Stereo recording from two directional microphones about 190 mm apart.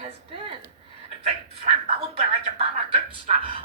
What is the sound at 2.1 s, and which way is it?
Speech, 30° right (ahead or behind).